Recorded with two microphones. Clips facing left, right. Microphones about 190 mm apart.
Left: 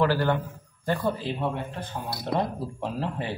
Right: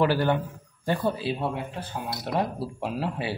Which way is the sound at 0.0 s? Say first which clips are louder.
Right 1 dB; 15° right (ahead or behind).